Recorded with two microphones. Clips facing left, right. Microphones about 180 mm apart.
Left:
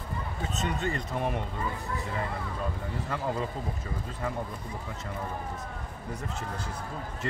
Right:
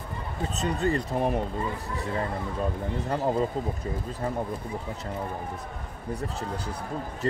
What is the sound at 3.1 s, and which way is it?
Speech, 40° right (ahead or behind).